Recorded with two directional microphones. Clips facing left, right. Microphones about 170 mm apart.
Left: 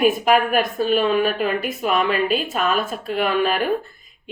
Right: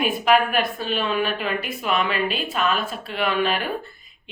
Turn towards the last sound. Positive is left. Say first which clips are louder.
# left 3 dB
turn(degrees=45)  # may be behind; listen again after turning